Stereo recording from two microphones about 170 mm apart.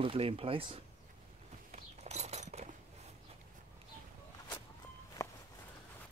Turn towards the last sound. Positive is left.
turn(degrees=20)  # may be behind; listen again after turning